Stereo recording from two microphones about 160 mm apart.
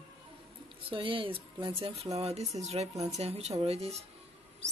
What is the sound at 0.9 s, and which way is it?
A woman's voice, 35° right (ahead or behind).